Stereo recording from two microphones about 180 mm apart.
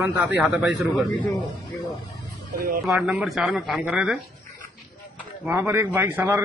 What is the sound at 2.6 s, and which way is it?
Speech, 55° right (ahead or behind).